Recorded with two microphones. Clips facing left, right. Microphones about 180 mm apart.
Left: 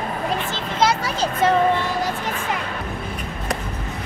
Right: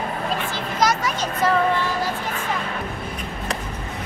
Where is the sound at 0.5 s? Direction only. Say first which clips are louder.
Left 1 dB; 30° left (ahead or behind).